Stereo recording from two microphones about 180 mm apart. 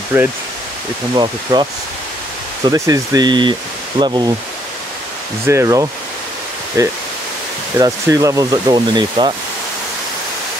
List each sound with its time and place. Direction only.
0.1 s speech: 10° right (ahead or behind)
1.1 s speech: 25° right (ahead or behind)
2.7 s speech: 20° right (ahead or behind)
5.5 s speech: 15° right (ahead or behind)